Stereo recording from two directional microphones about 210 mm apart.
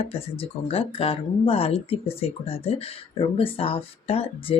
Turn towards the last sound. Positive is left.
turn(degrees=25)  # may be behind; listen again after turning